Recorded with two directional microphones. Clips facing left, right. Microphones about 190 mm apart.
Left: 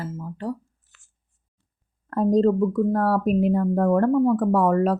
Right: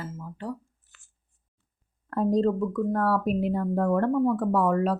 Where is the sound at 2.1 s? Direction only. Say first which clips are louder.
Left 4 dB; 40° left (ahead or behind).